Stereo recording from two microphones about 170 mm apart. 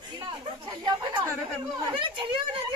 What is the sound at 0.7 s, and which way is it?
Chatter, 25° right (ahead or behind).